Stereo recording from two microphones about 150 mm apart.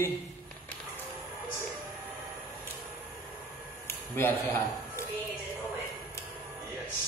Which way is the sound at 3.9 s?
15° left (ahead or behind).